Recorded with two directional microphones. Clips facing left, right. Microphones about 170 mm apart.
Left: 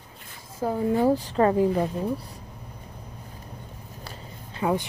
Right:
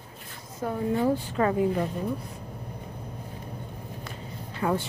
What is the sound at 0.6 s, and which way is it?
Speech, 35° left (ahead or behind).